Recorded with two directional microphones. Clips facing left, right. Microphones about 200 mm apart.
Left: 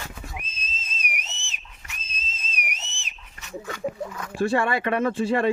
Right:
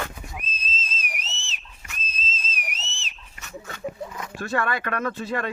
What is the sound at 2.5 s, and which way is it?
Whistle, 15° left (ahead or behind).